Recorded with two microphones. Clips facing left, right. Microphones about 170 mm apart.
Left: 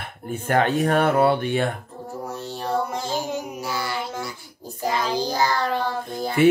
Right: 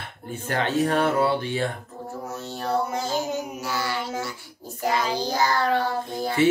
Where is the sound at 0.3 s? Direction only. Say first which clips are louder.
Left 5 dB; 55° left (ahead or behind).